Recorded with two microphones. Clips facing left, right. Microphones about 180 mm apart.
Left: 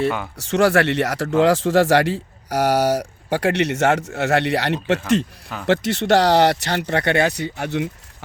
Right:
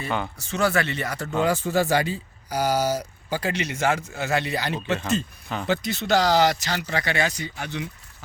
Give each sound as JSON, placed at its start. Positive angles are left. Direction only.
{"t": 0.3, "sound": "speech", "side_deg": 80}